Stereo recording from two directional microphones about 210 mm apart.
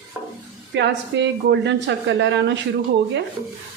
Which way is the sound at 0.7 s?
60° right (ahead or behind).